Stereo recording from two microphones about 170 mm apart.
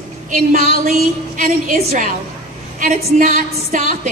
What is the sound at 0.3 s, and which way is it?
A woman's voice, 50° right (ahead or behind).